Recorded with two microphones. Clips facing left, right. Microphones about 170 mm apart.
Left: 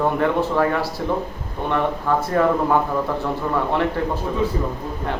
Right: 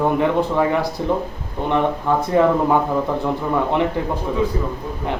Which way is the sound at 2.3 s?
15° right (ahead or behind).